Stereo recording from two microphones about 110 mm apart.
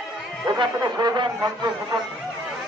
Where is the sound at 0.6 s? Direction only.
40° right (ahead or behind).